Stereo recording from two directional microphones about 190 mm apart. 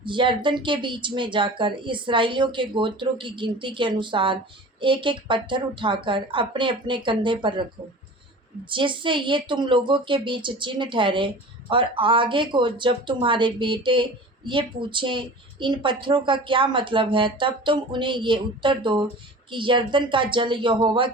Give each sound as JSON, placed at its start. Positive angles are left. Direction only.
{"t": 0.0, "sound": "speech", "side_deg": -25}
{"t": 8.7, "sound": "speech", "side_deg": -25}